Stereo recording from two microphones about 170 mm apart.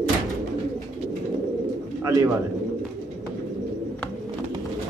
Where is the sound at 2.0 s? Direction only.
20° right (ahead or behind).